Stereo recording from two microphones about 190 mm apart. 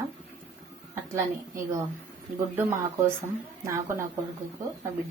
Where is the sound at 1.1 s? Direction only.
15° right (ahead or behind).